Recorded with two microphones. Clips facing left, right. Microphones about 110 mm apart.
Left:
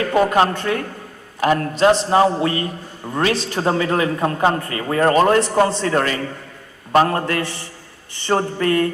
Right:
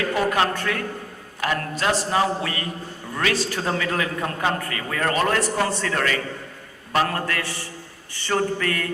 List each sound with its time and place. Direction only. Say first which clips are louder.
0.1 s a man's voice: left 8 dB; 25° left (ahead or behind)